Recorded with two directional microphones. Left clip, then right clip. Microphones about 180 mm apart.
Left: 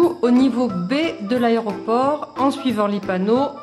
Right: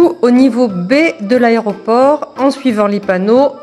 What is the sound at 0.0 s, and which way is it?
A woman's voice, 30° right (ahead or behind).